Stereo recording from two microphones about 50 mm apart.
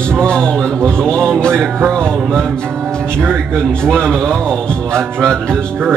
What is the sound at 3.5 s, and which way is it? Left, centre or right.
Music, centre.